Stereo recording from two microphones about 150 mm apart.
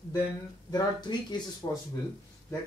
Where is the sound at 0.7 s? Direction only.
25° left (ahead or behind).